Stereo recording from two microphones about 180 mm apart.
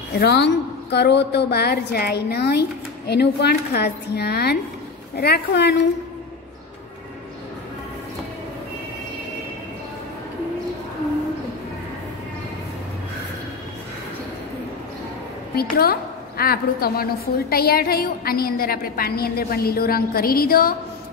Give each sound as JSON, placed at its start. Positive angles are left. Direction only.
{"t": 0.1, "sound": "a woman's voice", "side_deg": 65}
{"t": 15.8, "sound": "a woman's voice", "side_deg": 55}